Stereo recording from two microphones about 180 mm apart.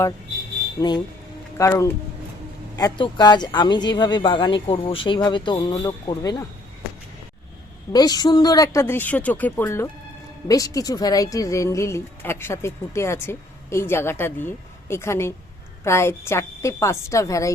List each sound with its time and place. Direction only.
0.8 s a woman's voice: 25° left (ahead or behind)
7.9 s a woman's voice: 20° left (ahead or behind)